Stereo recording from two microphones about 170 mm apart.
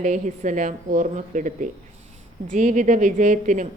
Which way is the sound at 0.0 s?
45° right (ahead or behind).